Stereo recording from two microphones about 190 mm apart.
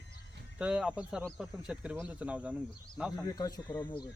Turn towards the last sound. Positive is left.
turn(degrees=15)  # may be behind; listen again after turning